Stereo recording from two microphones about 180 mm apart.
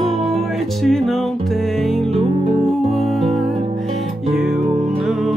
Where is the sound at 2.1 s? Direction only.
35° right (ahead or behind).